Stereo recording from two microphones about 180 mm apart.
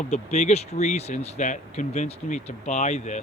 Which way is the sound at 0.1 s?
40° left (ahead or behind).